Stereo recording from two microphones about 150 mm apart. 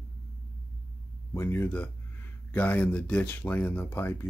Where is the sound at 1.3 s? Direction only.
15° left (ahead or behind).